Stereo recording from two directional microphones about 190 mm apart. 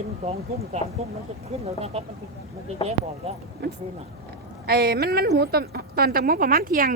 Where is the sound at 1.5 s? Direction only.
35° right (ahead or behind).